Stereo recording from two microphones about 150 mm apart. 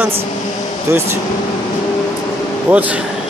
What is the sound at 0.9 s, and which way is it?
Speech, 20° right (ahead or behind).